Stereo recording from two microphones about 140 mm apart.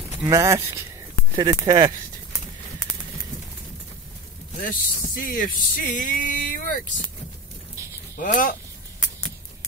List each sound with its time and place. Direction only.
0.3 s speech: 20° right (ahead or behind)
4.6 s speech: 85° left
8.2 s speech: 75° left (ahead or behind)